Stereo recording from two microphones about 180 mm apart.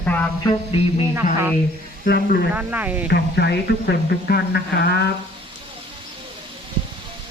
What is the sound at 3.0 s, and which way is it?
Speech, 60° left (ahead or behind).